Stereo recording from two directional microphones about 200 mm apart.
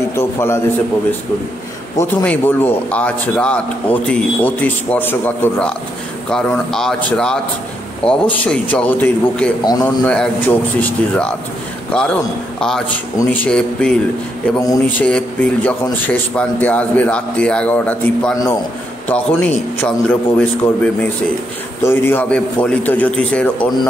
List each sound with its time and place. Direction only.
0.1 s a man's voice: 15° left (ahead or behind)
2.0 s a man's voice: 10° left (ahead or behind)
14.6 s a man's voice: 15° left (ahead or behind)
15.0 s a man's voice: 5° left (ahead or behind)